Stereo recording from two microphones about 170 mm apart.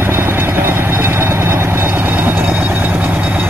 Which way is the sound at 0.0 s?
10° right (ahead or behind).